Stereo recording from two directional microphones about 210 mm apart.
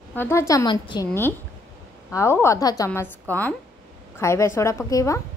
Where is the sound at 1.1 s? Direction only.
10° left (ahead or behind).